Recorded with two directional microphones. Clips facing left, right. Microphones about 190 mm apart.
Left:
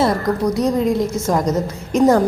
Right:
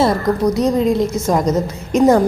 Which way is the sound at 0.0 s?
20° right (ahead or behind).